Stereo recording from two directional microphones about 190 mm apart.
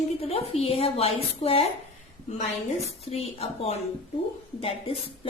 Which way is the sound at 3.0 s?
35° left (ahead or behind).